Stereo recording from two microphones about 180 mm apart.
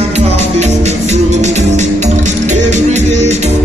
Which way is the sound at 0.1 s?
40° right (ahead or behind).